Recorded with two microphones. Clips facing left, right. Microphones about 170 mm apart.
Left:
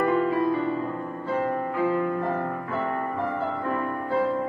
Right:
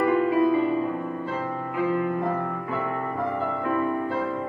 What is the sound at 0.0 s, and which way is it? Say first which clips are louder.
Music: right 2 dB; 15° right (ahead or behind).